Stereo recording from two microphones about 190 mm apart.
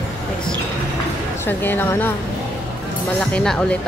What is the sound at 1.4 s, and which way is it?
Speech, 10° left (ahead or behind).